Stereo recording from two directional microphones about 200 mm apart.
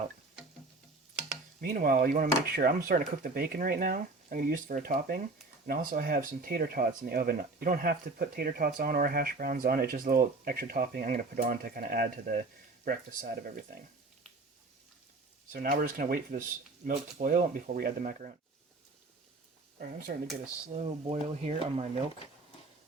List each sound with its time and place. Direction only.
1.6 s speech: 45° right (ahead or behind)
15.5 s speech: 45° right (ahead or behind)
20.1 s speech: 45° right (ahead or behind)
20.7 s speech: 30° right (ahead or behind)